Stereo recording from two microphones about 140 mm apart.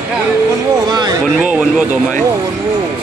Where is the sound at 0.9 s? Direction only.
30° right (ahead or behind).